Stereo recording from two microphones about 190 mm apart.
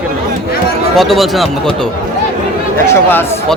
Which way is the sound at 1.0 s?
Centre (ahead or behind).